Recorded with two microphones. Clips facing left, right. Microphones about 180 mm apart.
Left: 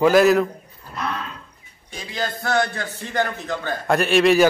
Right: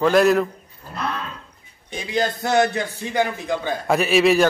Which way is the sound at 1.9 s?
20° right (ahead or behind).